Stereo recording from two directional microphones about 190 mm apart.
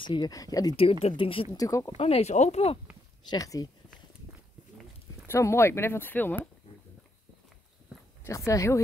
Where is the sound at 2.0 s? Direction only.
35° left (ahead or behind).